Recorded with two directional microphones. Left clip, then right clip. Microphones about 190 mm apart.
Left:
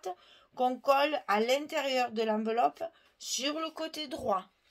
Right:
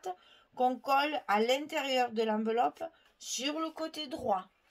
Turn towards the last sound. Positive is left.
turn(degrees=35)  # may be behind; listen again after turning